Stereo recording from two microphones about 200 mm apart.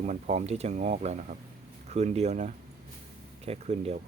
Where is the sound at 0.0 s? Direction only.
35° right (ahead or behind).